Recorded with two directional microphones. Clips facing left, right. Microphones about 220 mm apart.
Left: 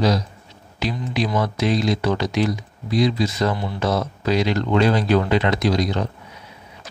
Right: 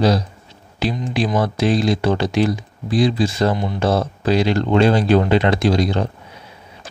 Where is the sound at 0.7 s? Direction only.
30° right (ahead or behind).